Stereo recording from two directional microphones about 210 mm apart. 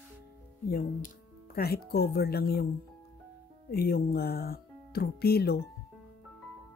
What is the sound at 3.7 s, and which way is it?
Speech, 45° left (ahead or behind).